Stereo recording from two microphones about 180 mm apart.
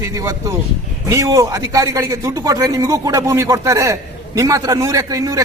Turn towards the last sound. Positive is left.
turn(degrees=-20)  # may be behind; listen again after turning